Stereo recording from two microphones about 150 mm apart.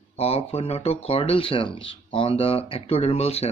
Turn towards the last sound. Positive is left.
turn(degrees=40)  # may be behind; listen again after turning